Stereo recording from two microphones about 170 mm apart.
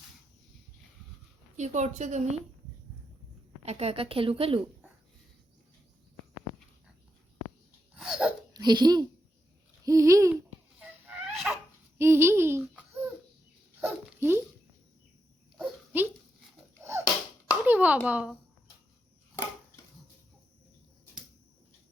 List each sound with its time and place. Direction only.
1.5 s a woman's voice: 45° right (ahead or behind)
3.7 s a woman's voice: 35° right (ahead or behind)
7.9 s hiccup: 5° right (ahead or behind)
8.5 s speech: 25° right (ahead or behind)
9.8 s babbling: 20° right (ahead or behind)
10.8 s a sound: 10° right (ahead or behind)
11.9 s speech: 15° right (ahead or behind)
13.8 s dog: 15° right (ahead or behind)
15.5 s a sound: 5° right (ahead or behind)
17.5 s clapping: 10° right (ahead or behind)
18.0 s babbling: 5° right (ahead or behind)